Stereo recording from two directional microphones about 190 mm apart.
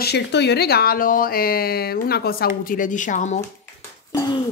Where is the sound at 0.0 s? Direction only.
60° left (ahead or behind); by 3.3 s 40° left (ahead or behind).